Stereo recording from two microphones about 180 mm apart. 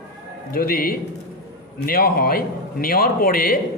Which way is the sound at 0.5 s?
55° left (ahead or behind).